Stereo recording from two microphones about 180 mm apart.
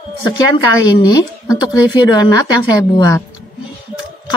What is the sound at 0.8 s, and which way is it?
Speech, 20° left (ahead or behind).